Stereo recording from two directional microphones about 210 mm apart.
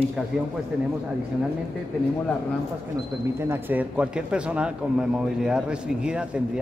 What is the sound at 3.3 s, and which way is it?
A man's voice, 10° right (ahead or behind).